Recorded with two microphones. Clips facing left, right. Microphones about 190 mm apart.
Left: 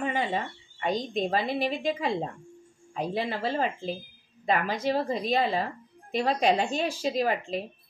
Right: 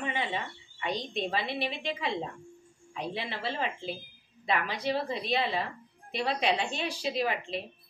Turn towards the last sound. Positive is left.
turn(degrees=40)  # may be behind; listen again after turning